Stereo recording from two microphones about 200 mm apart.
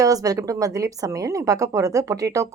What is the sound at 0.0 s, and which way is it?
Speech, 15° right (ahead or behind).